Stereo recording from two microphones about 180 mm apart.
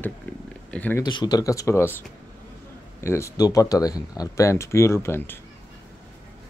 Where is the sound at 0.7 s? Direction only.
10° left (ahead or behind).